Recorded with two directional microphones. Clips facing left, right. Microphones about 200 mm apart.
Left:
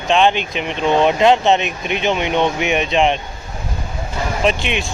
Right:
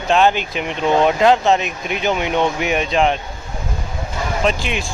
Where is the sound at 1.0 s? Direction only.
20° left (ahead or behind).